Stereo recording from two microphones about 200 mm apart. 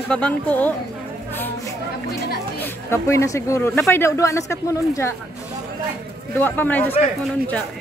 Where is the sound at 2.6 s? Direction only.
15° left (ahead or behind).